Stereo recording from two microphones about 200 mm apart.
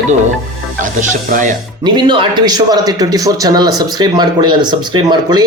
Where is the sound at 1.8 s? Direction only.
20° right (ahead or behind).